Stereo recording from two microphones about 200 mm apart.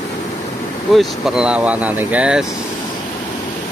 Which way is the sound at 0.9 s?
Centre (ahead or behind).